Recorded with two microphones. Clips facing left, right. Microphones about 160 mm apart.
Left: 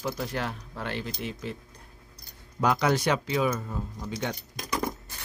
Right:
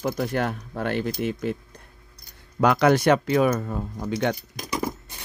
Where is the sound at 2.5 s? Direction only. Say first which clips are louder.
Right 6 dB; 65° right (ahead or behind).